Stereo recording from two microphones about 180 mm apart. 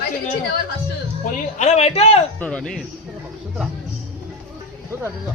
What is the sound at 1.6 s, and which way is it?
Speech, 40° left (ahead or behind).